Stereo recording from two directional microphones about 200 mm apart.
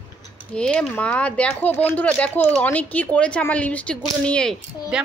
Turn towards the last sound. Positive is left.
turn(degrees=-5)  # may be behind; listen again after turning